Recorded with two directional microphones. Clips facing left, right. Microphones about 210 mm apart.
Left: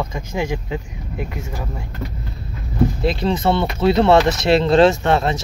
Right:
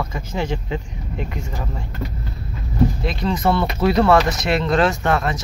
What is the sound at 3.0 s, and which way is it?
Speech, 30° left (ahead or behind).